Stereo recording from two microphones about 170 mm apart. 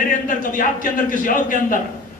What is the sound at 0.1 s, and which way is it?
A man's voice, 50° left (ahead or behind).